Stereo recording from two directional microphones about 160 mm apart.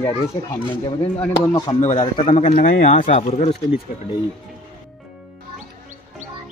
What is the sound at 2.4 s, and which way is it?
Speech, 50° left (ahead or behind).